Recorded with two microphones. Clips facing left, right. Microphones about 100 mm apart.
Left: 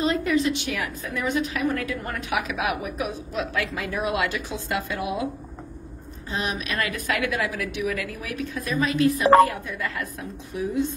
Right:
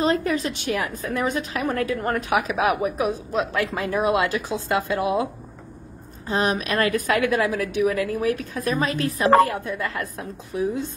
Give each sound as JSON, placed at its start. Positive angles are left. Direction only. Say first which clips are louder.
{"t": 0.0, "sound": "a woman's voice", "louder": "right 1 dB", "side_deg": -40}
{"t": 6.3, "sound": "a woman's voice", "louder": "right 6 dB", "side_deg": -40}